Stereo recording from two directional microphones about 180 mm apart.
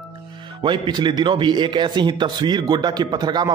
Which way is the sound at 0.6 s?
25° right (ahead or behind).